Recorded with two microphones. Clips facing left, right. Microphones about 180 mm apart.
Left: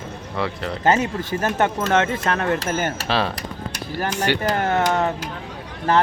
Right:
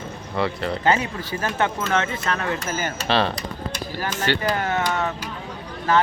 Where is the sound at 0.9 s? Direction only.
45° left (ahead or behind).